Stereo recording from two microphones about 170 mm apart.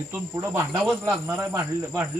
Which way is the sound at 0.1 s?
10° right (ahead or behind).